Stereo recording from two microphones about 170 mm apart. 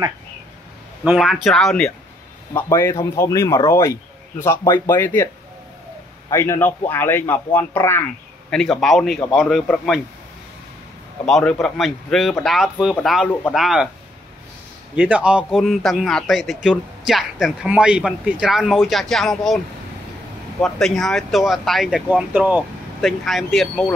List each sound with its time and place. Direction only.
1.0 s speech: centre (ahead or behind)
2.5 s speech: 15° left (ahead or behind)
6.3 s speech: 15° left (ahead or behind)
11.2 s speech: centre (ahead or behind)
15.0 s speech: 10° right (ahead or behind)
20.6 s speech: centre (ahead or behind)